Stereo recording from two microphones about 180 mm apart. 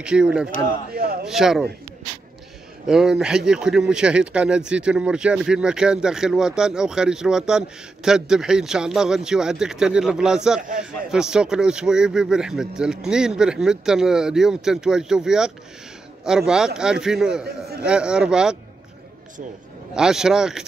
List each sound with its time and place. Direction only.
0.0 s speech: 5° right (ahead or behind)
0.9 s speech: 55° right (ahead or behind)
1.2 s speech: centre (ahead or behind)
2.9 s speech: 5° right (ahead or behind)
20.0 s speech: 5° right (ahead or behind)